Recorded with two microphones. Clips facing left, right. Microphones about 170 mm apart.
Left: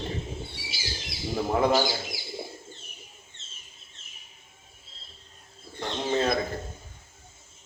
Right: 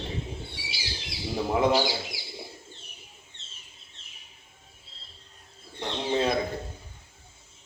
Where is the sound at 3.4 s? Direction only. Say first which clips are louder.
Even; 45° left (ahead or behind).